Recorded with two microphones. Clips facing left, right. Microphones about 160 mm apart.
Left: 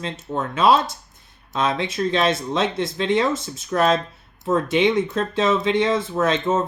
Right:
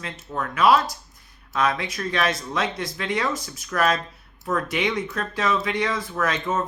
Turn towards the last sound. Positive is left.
turn(degrees=25)  # may be behind; listen again after turning